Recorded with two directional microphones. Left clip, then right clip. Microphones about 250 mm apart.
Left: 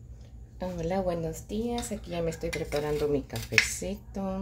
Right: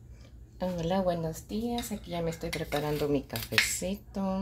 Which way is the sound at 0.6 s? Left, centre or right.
Centre.